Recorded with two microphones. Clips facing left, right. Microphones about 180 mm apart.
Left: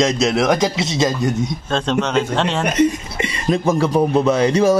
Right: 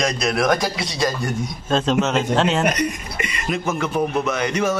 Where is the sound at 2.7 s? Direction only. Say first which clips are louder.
Left 7 dB; 25° left (ahead or behind).